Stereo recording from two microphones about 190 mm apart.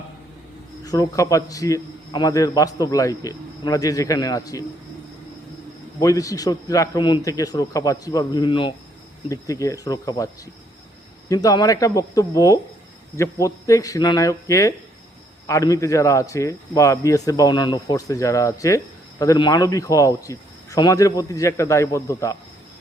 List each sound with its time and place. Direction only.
0.9 s a man's voice: 20° left (ahead or behind)
6.0 s a man's voice: 20° left (ahead or behind)
11.3 s a man's voice: 20° left (ahead or behind)